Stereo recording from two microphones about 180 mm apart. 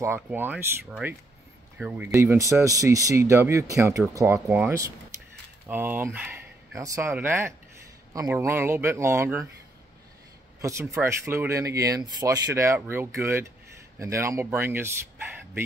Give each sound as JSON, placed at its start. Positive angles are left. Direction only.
{"t": 0.0, "sound": "speech", "side_deg": -15}
{"t": 10.6, "sound": "speech", "side_deg": -15}